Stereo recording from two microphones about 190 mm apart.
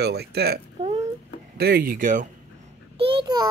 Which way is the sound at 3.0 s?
25° right (ahead or behind).